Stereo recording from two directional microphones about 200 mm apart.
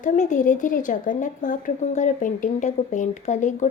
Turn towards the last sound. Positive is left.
turn(degrees=35)  # may be behind; listen again after turning